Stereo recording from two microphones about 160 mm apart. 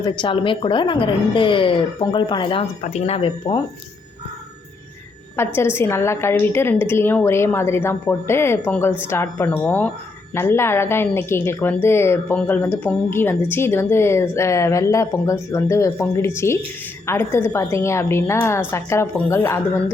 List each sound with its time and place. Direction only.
0.0 s a woman's voice: 30° left (ahead or behind)
5.4 s a woman's voice: 15° left (ahead or behind)